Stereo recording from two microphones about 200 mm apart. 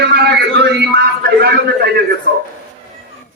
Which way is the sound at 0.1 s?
55° right (ahead or behind).